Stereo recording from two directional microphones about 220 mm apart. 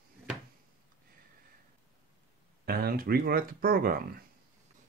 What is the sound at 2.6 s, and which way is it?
Speech, 45° right (ahead or behind).